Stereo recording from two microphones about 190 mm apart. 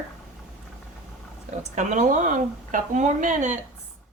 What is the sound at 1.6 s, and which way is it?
Speech, 40° right (ahead or behind).